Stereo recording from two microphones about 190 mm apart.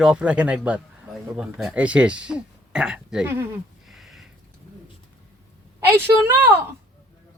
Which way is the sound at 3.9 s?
Centre (ahead or behind).